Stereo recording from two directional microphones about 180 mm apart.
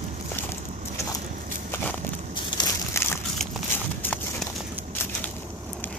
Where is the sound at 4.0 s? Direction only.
10° left (ahead or behind).